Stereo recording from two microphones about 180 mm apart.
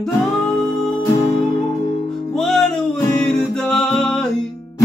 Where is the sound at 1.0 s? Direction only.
20° left (ahead or behind).